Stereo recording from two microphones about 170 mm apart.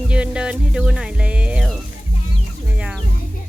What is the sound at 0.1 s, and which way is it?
Music, 5° right (ahead or behind).